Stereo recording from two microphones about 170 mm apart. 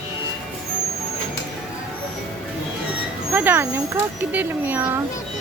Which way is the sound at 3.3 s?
10° right (ahead or behind).